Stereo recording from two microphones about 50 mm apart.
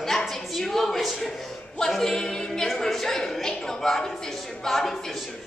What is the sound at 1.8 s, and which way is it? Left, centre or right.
A capella, centre.